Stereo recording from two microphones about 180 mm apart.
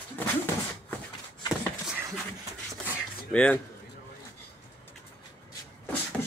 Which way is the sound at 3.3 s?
5° left (ahead or behind).